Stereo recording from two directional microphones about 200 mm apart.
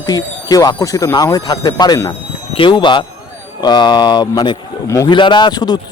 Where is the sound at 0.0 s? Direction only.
20° left (ahead or behind).